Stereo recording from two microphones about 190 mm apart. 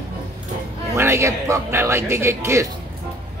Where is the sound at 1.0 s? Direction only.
15° right (ahead or behind).